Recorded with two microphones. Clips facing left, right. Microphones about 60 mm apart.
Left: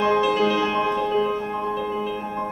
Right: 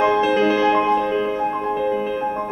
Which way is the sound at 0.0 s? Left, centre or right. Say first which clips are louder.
Right 3 dB; right.